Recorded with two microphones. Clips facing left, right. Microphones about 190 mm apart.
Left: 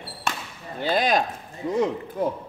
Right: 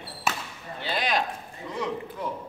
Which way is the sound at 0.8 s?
45° left (ahead or behind).